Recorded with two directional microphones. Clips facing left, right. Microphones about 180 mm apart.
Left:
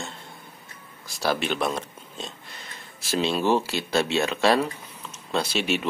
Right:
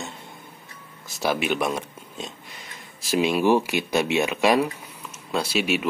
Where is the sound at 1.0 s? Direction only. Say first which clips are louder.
Right 1 dB; 15° right (ahead or behind).